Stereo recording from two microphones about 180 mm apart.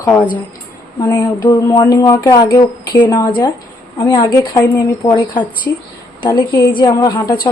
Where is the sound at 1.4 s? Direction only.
20° left (ahead or behind).